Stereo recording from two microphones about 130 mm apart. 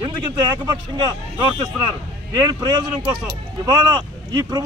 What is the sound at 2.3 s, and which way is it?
A man's voice, 30° right (ahead or behind).